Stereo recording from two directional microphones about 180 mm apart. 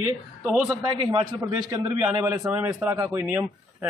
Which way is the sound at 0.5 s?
Centre (ahead or behind).